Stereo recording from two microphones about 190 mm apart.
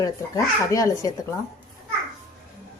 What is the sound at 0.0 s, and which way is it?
Speech, 15° left (ahead or behind).